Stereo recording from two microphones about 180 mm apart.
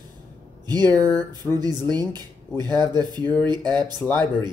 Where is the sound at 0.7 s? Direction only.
20° right (ahead or behind).